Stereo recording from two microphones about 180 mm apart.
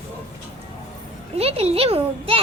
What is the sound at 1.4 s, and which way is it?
A child's voice, 35° right (ahead or behind).